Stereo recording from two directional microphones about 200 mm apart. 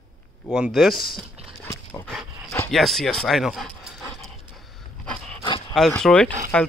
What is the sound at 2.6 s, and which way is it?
Speech, centre (ahead or behind).